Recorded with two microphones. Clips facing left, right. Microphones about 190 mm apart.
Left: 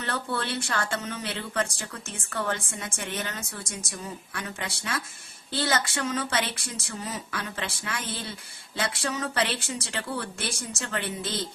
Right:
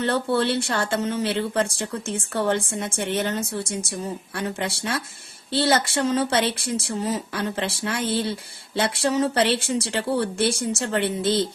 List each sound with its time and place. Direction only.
0.0 s speech: 30° right (ahead or behind)